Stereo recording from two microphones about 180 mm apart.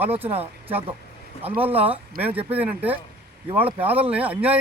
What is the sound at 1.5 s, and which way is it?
Speech, 10° right (ahead or behind).